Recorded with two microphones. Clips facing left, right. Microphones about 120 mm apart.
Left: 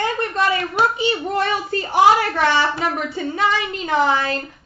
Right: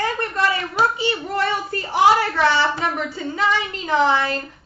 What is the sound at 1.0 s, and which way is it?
A woman's voice, 20° left (ahead or behind).